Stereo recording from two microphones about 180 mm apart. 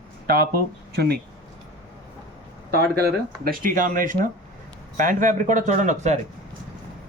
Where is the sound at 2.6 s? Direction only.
60° right (ahead or behind); by 6.1 s 40° right (ahead or behind).